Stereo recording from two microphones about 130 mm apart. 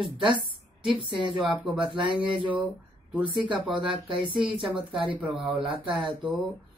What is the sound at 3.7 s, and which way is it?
Speech, 40° right (ahead or behind).